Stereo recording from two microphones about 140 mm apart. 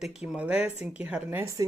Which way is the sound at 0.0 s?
5° right (ahead or behind).